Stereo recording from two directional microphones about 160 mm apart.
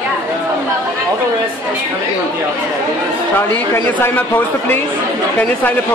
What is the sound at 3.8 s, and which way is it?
A man's voice, 10° left (ahead or behind).